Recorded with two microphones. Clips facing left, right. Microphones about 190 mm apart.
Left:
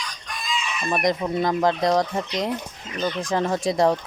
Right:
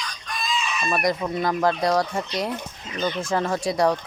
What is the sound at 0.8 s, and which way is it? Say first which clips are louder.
Speech: left 2 dB; 20° left (ahead or behind).